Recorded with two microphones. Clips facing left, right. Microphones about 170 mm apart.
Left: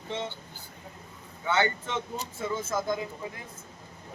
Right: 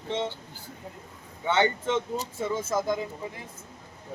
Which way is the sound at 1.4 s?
25° right (ahead or behind).